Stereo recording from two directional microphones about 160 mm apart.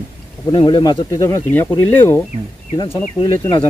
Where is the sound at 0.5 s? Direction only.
30° left (ahead or behind).